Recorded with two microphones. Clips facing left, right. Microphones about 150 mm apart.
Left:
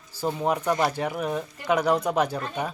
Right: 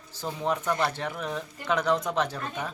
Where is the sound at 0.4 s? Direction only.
10° left (ahead or behind).